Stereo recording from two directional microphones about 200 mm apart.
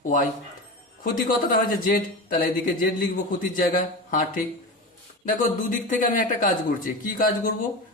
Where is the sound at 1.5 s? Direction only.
45° left (ahead or behind).